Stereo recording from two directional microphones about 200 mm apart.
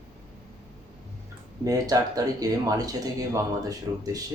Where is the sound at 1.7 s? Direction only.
20° right (ahead or behind).